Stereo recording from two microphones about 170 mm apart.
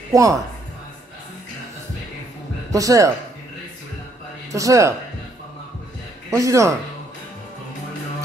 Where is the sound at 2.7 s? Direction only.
20° right (ahead or behind).